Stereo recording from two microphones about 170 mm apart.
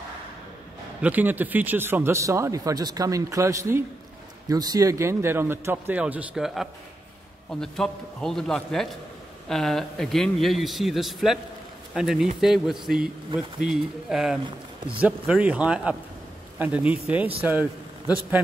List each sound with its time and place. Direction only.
1.0 s a man's voice: 10° right (ahead or behind)